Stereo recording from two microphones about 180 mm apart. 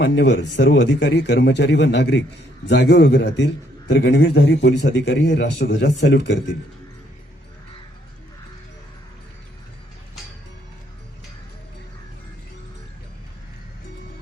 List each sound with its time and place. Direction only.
0.0 s a man's voice: 70° left (ahead or behind)